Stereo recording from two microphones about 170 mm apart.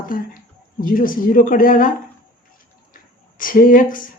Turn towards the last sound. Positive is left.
turn(degrees=55)  # may be behind; listen again after turning